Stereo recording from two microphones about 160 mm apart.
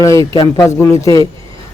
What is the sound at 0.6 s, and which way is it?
Speech, 15° left (ahead or behind).